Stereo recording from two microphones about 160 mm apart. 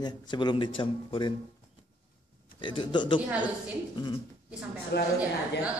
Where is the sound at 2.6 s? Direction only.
30° left (ahead or behind).